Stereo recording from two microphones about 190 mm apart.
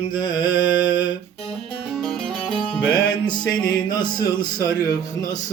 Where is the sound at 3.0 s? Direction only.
25° left (ahead or behind).